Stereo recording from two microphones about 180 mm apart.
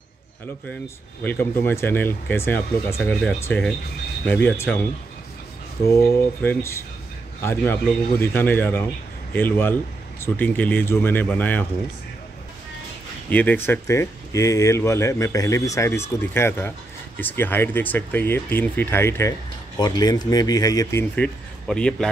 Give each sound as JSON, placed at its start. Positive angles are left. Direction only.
{"t": 1.2, "sound": "speech", "side_deg": 10}
{"t": 5.9, "sound": "speech", "side_deg": 15}
{"t": 13.3, "sound": "a man's voice", "side_deg": 10}